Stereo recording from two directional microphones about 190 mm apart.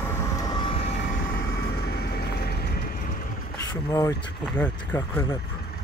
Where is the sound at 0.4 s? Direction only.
25° left (ahead or behind).